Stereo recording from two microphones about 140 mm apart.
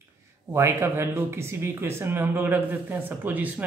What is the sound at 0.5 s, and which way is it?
Speech, 20° right (ahead or behind).